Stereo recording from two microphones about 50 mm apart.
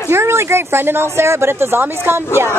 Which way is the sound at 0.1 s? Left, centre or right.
Right.